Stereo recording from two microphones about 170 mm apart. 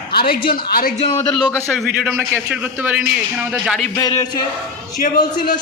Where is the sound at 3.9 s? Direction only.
25° left (ahead or behind).